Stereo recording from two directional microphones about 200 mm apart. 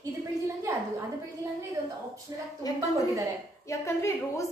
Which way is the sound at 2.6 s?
20° left (ahead or behind).